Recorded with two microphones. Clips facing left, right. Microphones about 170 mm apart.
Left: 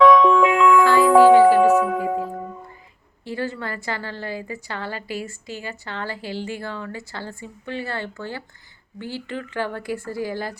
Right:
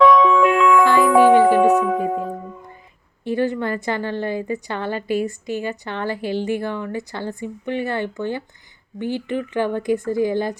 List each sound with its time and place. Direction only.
0.0 s music: centre (ahead or behind)
1.1 s music: 20° right (ahead or behind)
3.2 s a woman's voice: 20° right (ahead or behind)